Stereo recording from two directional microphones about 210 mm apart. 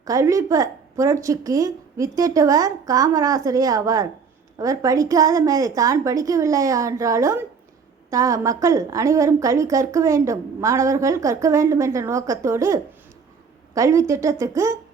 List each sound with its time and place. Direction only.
0.0 s a woman's voice: 15° right (ahead or behind)